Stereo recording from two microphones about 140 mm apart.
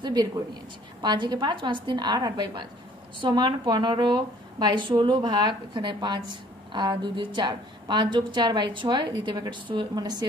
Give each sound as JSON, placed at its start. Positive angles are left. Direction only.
{"t": 0.0, "sound": "a woman's voice", "side_deg": -30}